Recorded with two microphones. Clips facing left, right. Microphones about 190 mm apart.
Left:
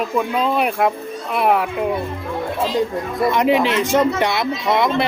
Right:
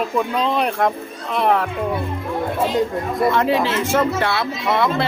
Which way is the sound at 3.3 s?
15° left (ahead or behind).